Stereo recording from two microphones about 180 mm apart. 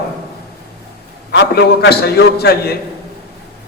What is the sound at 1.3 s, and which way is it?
A man's voice, 65° left (ahead or behind).